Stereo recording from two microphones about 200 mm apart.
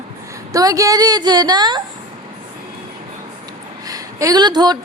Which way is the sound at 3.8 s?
15° right (ahead or behind).